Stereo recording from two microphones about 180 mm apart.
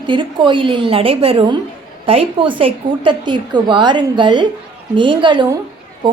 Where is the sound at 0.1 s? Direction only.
25° right (ahead or behind).